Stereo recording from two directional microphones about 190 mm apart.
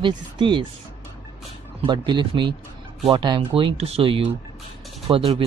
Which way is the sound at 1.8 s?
25° right (ahead or behind).